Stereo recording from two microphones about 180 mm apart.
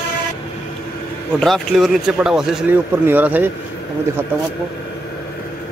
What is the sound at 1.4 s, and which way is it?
A man's voice, centre (ahead or behind).